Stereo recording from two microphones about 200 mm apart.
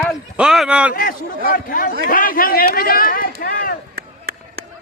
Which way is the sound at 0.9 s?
45° left (ahead or behind).